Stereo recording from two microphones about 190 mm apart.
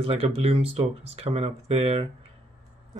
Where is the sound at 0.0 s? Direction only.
30° right (ahead or behind).